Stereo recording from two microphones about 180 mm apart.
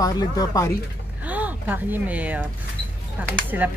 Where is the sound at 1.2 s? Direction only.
10° right (ahead or behind).